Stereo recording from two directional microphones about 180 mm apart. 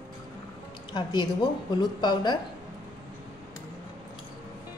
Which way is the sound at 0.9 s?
25° left (ahead or behind).